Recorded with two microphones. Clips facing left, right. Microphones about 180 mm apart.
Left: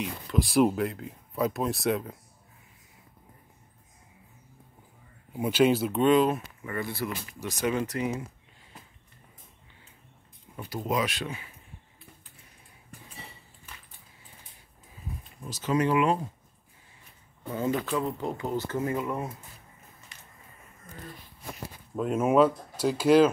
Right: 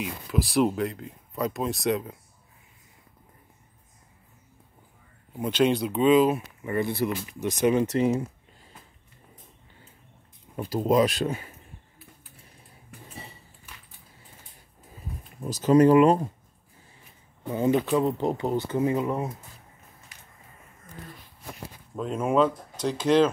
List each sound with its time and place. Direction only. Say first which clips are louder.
0.0 s speech: even; centre (ahead or behind)
5.3 s speech: even; 10° left (ahead or behind)
6.6 s speech: right 6 dB; 25° right (ahead or behind)
10.5 s a sound: right 7 dB; 35° right (ahead or behind)
10.9 s speech: right 8 dB; 40° right (ahead or behind)
15.4 s speech: right 9 dB; 40° right (ahead or behind)
18.0 s speech: right 6 dB; 25° right (ahead or behind)
21.9 s speech: left 1 dB; 5° left (ahead or behind)